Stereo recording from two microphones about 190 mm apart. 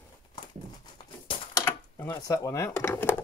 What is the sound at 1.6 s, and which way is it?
Speech, 15° left (ahead or behind).